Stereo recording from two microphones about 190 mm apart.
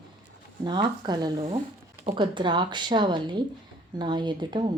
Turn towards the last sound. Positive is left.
turn(degrees=-25)  # may be behind; listen again after turning